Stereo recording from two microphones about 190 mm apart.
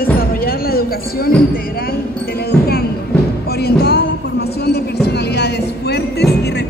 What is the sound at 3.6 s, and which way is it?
Music, 55° left (ahead or behind).